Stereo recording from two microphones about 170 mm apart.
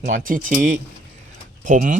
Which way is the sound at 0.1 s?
50° right (ahead or behind).